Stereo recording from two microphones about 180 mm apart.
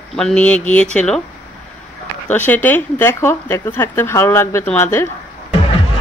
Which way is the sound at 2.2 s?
10° left (ahead or behind).